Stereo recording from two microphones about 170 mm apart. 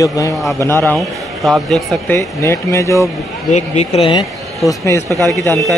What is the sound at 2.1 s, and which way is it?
A man's voice, 15° left (ahead or behind).